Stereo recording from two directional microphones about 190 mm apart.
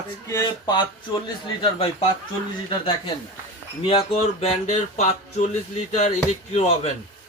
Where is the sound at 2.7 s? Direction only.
25° left (ahead or behind).